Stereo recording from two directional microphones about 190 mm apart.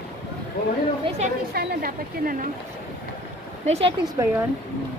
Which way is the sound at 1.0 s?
35° right (ahead or behind).